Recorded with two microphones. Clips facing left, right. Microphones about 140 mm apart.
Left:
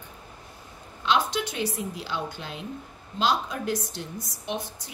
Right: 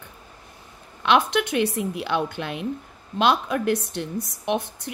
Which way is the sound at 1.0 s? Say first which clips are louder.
Right 5 dB; 60° right (ahead or behind).